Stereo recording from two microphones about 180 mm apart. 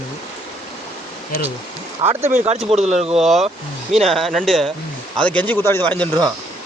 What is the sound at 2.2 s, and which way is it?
Speech, 10° right (ahead or behind).